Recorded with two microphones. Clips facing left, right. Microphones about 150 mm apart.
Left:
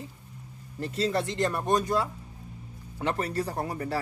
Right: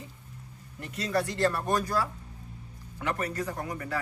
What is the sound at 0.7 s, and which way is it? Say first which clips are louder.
A man's voice: left 2 dB; 30° left (ahead or behind).